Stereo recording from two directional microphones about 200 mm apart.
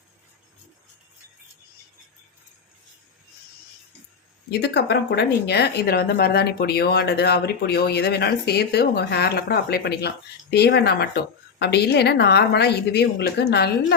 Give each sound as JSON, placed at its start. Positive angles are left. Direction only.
{"t": 4.6, "sound": "a woman's voice", "side_deg": 55}